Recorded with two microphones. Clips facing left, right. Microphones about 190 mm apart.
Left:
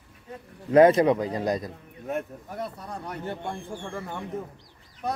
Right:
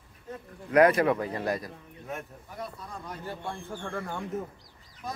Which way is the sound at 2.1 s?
65° left (ahead or behind).